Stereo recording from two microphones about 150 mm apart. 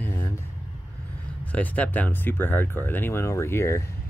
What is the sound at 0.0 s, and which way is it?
Vehicle, 15° left (ahead or behind).